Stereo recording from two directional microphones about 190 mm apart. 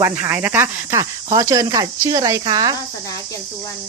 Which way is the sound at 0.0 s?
10° right (ahead or behind).